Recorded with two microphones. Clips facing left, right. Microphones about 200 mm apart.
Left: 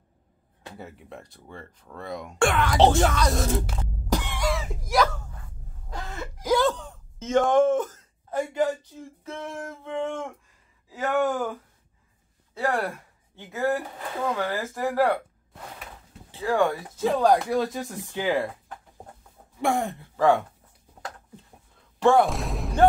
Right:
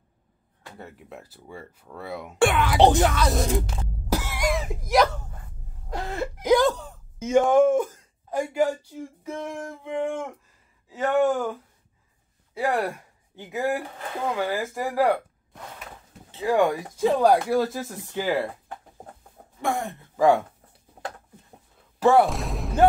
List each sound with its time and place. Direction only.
0.7 s speech: centre (ahead or behind)
4.1 s cough: 10° right (ahead or behind)
6.4 s speech: 15° right (ahead or behind)
10.9 s speech: centre (ahead or behind)
12.5 s speech: 10° right (ahead or behind)
16.3 s speech: 15° right (ahead or behind); by 18.5 s centre (ahead or behind)
19.6 s speech: 15° left (ahead or behind)
20.2 s speech: 10° right (ahead or behind)
22.0 s speech: 5° right (ahead or behind)